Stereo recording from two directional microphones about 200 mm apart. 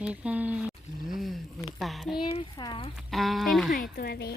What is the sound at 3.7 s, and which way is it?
Speech, 45° left (ahead or behind).